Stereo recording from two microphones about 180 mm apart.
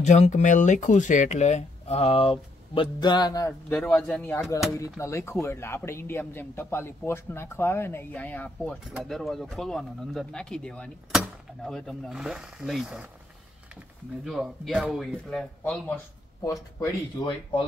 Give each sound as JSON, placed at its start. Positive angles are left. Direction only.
{"t": 0.0, "sound": "speech", "side_deg": 40}
{"t": 3.6, "sound": "speech", "side_deg": 10}
{"t": 14.2, "sound": "speech", "side_deg": 0}
{"t": 16.4, "sound": "speech", "side_deg": 20}